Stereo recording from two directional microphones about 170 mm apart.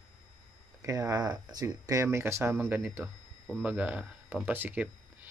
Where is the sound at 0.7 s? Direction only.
20° right (ahead or behind).